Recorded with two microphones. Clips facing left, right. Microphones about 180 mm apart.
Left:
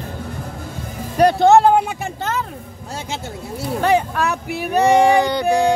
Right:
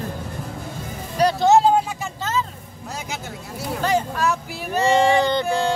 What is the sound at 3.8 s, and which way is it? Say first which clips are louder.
Vehicle: left 3 dB; 60° left (ahead or behind).